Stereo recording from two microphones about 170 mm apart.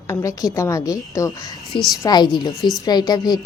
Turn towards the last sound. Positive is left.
turn(degrees=25)  # may be behind; listen again after turning